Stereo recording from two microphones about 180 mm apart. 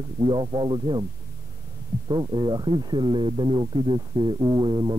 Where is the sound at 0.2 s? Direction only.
25° right (ahead or behind).